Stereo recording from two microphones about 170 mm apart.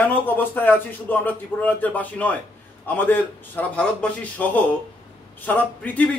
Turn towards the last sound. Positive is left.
turn(degrees=10)  # may be behind; listen again after turning